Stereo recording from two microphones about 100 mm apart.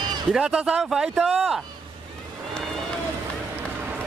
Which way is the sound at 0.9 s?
Centre (ahead or behind).